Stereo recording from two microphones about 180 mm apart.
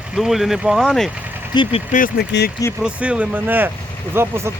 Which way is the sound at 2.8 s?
5° right (ahead or behind).